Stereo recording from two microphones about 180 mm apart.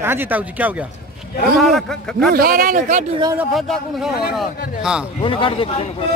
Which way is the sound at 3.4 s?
Centre (ahead or behind).